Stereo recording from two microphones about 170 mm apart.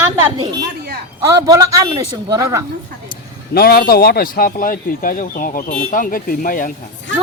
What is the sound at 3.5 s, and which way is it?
Speech, 65° left (ahead or behind).